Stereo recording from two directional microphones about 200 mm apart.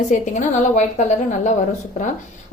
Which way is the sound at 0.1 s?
35° left (ahead or behind).